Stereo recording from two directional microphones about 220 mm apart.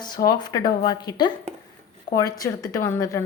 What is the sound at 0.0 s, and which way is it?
Speech, 20° left (ahead or behind).